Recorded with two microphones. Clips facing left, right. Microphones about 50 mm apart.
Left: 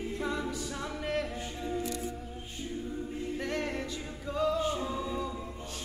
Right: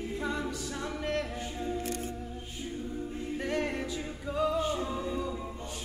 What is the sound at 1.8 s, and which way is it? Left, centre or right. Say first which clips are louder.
Music: even; right.